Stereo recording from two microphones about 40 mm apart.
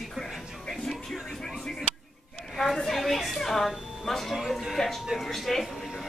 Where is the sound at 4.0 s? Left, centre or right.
Centre.